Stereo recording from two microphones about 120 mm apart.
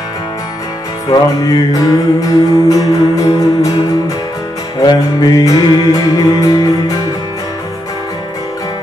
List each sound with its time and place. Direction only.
1.1 s music: 30° left (ahead or behind)
4.7 s music: 30° left (ahead or behind)